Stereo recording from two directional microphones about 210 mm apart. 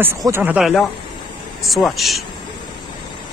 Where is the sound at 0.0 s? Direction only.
10° right (ahead or behind).